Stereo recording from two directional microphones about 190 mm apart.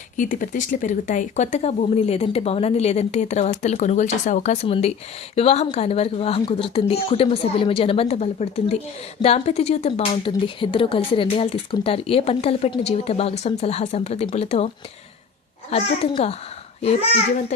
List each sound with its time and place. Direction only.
0.2 s speech: 45° left (ahead or behind)
15.7 s speech: 30° left (ahead or behind)